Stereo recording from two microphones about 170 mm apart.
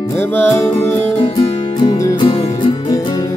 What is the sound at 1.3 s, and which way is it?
Music, 25° left (ahead or behind).